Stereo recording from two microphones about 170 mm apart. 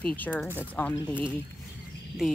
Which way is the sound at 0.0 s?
10° left (ahead or behind).